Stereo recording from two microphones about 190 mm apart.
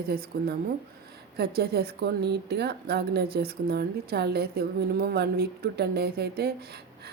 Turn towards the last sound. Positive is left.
turn(degrees=-55)  # may be behind; listen again after turning